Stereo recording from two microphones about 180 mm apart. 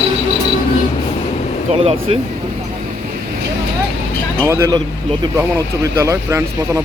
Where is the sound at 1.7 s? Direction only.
30° right (ahead or behind).